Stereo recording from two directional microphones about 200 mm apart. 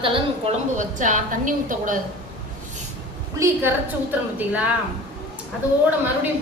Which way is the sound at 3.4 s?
10° right (ahead or behind).